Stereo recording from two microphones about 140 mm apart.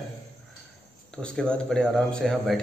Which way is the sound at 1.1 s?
5° left (ahead or behind).